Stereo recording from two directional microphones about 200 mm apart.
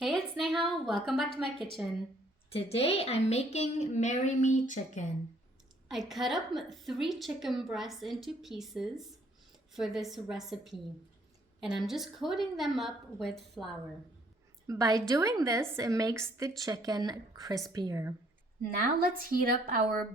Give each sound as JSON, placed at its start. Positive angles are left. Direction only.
{"t": 0.0, "sound": "a sound", "side_deg": 0}
{"t": 1.8, "sound": "a woman's voice", "side_deg": -5}
{"t": 2.5, "sound": "a woman's voice", "side_deg": 30}
{"t": 5.9, "sound": "a woman's voice", "side_deg": 0}
{"t": 14.7, "sound": "a woman's voice", "side_deg": -15}
{"t": 18.9, "sound": "a woman's voice", "side_deg": -45}